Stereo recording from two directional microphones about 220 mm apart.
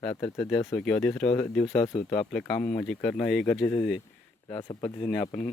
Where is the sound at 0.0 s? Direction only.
10° left (ahead or behind).